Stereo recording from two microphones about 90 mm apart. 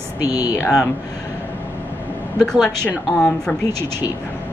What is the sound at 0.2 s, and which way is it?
Speech, 45° left (ahead or behind).